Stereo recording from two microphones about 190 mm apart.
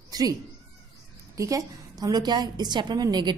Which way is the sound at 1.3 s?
15° right (ahead or behind).